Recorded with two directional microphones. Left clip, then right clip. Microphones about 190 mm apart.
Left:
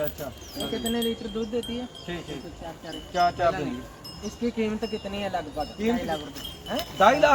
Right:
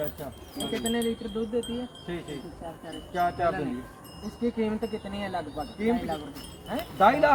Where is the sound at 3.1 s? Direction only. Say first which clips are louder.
Left 4 dB; 10° left (ahead or behind).